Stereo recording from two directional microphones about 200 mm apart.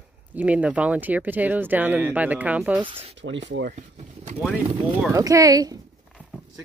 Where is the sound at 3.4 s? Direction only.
65° right (ahead or behind).